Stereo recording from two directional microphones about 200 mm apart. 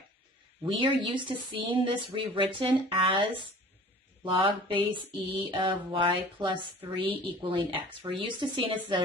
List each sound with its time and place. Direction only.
0.6 s mantra: 25° right (ahead or behind)